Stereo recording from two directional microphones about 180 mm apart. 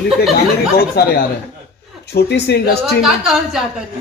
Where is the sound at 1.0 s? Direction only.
65° left (ahead or behind).